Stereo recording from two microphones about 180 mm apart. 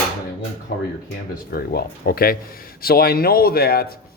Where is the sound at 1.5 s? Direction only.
55° left (ahead or behind).